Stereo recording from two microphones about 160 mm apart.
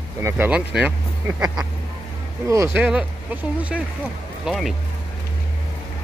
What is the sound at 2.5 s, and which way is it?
Speech, 15° right (ahead or behind).